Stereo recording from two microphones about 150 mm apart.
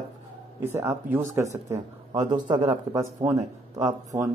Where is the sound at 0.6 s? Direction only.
15° right (ahead or behind).